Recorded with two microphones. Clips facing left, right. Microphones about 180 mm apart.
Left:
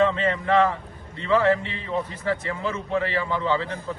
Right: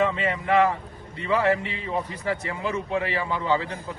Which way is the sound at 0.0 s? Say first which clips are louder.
Left 3 dB; 15° right (ahead or behind).